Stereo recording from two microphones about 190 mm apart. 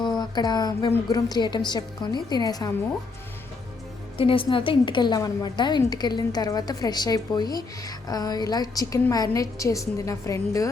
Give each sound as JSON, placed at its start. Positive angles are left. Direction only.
{"t": 0.2, "sound": "a woman's voice", "side_deg": 20}
{"t": 4.2, "sound": "a woman's voice", "side_deg": 25}